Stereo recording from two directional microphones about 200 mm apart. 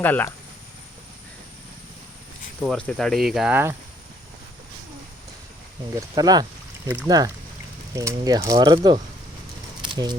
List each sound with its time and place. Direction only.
0.0 s speech: 10° left (ahead or behind)
2.6 s speech: 5° left (ahead or behind)
6.0 s speech: 20° right (ahead or behind)
9.8 s a sound: 20° right (ahead or behind)